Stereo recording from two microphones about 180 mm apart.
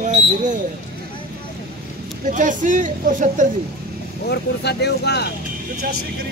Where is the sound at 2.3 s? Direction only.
45° right (ahead or behind).